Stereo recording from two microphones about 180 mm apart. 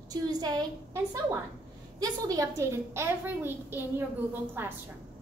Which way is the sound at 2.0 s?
20° right (ahead or behind).